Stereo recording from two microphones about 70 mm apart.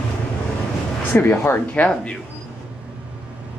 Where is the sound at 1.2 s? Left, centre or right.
Left.